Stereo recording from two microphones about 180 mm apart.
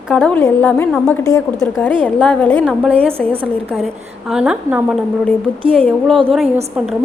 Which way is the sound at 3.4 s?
5° right (ahead or behind).